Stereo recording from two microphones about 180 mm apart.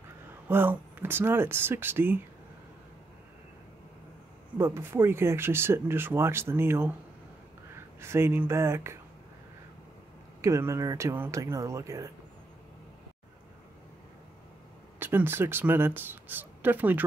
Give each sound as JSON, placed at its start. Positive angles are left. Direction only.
{"t": 0.5, "sound": "speech", "side_deg": -10}
{"t": 4.6, "sound": "speech", "side_deg": -15}
{"t": 10.4, "sound": "speech", "side_deg": -15}
{"t": 15.0, "sound": "speech", "side_deg": -10}